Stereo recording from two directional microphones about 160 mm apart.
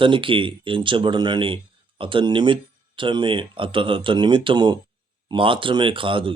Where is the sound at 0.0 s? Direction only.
30° right (ahead or behind).